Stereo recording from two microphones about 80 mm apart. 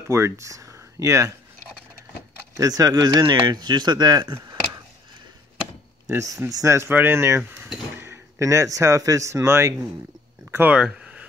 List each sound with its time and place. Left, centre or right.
0.1 s speech: right
2.5 s speech: right
3.1 s speech: right
6.0 s speech: right
10.7 s a sound: centre